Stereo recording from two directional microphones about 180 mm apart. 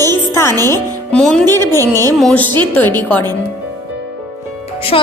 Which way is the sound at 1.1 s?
5° left (ahead or behind).